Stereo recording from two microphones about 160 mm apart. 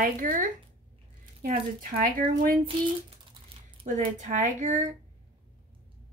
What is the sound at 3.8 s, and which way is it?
Speech, 50° right (ahead or behind).